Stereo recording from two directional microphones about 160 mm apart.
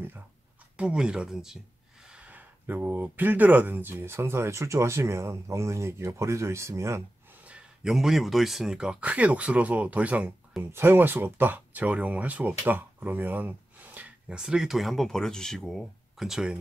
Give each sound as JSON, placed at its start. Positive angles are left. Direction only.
{"t": 0.7, "sound": "speech", "side_deg": -5}
{"t": 7.4, "sound": "speech", "side_deg": -5}